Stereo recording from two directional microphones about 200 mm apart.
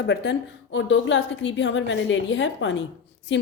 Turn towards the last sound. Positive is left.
turn(degrees=65)  # may be behind; listen again after turning